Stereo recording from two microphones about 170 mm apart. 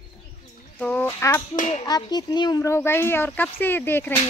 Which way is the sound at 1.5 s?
45° left (ahead or behind).